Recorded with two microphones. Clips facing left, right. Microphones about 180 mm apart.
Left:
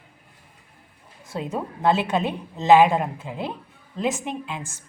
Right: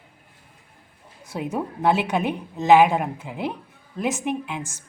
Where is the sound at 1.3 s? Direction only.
15° right (ahead or behind).